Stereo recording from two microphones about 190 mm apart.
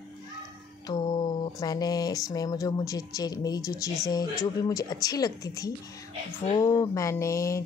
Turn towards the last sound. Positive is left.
turn(degrees=15)  # may be behind; listen again after turning